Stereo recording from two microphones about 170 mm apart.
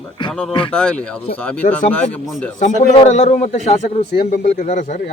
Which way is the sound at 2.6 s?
45° left (ahead or behind).